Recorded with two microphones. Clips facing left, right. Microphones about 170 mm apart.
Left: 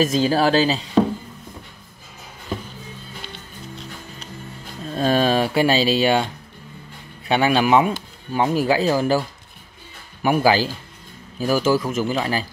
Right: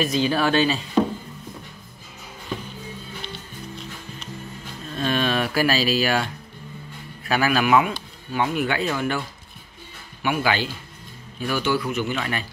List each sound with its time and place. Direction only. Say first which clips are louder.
0.0 s speech: left 4 dB; 40° left (ahead or behind)
4.9 s speech: left 5 dB; 40° left (ahead or behind)
7.2 s speech: left 3 dB; 25° left (ahead or behind)
10.2 s speech: left 6 dB; 35° left (ahead or behind)